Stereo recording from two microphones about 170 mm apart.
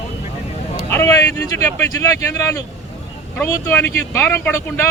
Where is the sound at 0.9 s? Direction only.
15° left (ahead or behind).